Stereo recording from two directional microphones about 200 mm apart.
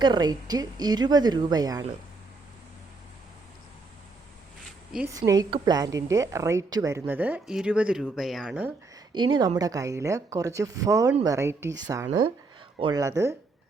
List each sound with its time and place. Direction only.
0.0 s a woman's voice: 20° right (ahead or behind)
5.0 s a woman's voice: 15° right (ahead or behind)
9.1 s a woman's voice: 25° right (ahead or behind)